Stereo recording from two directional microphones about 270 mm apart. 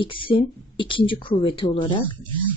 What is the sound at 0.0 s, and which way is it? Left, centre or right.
A woman's voice, centre.